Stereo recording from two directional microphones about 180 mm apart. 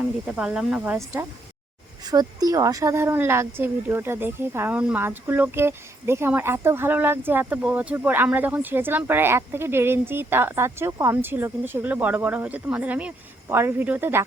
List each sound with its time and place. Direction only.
0.3 s speech: 5° right (ahead or behind)
2.0 s a woman's voice: 20° right (ahead or behind)